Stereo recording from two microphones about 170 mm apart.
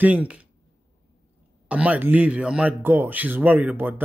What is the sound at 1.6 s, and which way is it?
Speech, 5° right (ahead or behind).